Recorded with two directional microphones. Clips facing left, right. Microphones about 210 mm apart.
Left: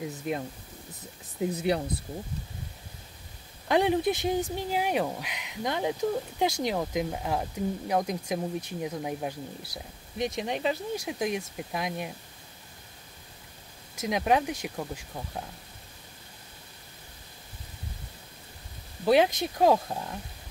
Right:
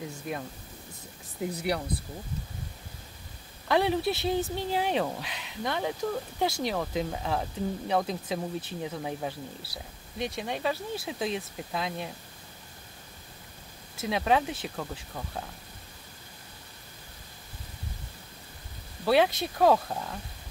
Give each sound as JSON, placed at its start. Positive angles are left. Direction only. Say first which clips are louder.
{"t": 0.3, "sound": "speech", "louder": "left 4 dB", "side_deg": 20}
{"t": 3.6, "sound": "speech", "louder": "left 2 dB", "side_deg": 15}
{"t": 13.9, "sound": "speech", "louder": "left 1 dB", "side_deg": 15}
{"t": 19.0, "sound": "speech", "louder": "left 1 dB", "side_deg": 15}